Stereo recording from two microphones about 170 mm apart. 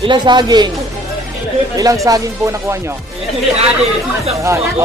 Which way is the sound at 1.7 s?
20° right (ahead or behind).